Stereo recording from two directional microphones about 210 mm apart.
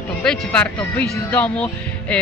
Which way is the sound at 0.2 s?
5° left (ahead or behind).